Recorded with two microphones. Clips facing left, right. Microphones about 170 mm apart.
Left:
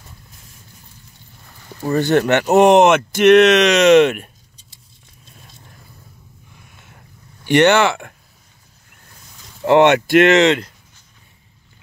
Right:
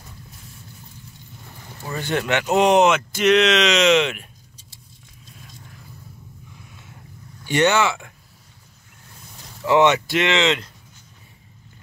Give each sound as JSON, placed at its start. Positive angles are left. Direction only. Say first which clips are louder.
{"t": 1.9, "sound": "speech", "louder": "left 8 dB", "side_deg": 40}
{"t": 7.4, "sound": "speech", "louder": "left 6 dB", "side_deg": 65}
{"t": 9.7, "sound": "speech", "louder": "left 5 dB", "side_deg": 60}